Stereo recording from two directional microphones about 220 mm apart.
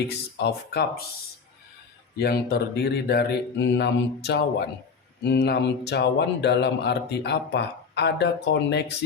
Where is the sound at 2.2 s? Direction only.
45° left (ahead or behind).